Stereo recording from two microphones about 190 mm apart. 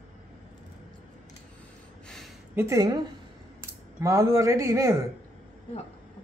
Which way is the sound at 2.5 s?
15° right (ahead or behind).